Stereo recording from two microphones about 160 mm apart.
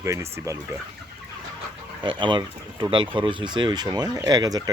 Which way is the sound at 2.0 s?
30° right (ahead or behind).